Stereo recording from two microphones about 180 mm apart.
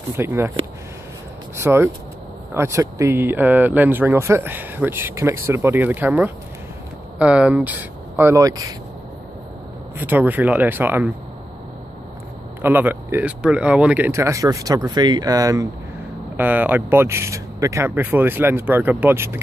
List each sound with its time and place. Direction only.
0.1 s speech: 15° right (ahead or behind)
1.6 s speech: 15° right (ahead or behind)
9.9 s speech: 10° right (ahead or behind)
12.6 s speech: 10° right (ahead or behind)